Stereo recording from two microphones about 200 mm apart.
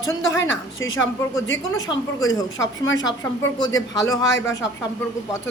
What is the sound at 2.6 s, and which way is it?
Speech, 70° left (ahead or behind).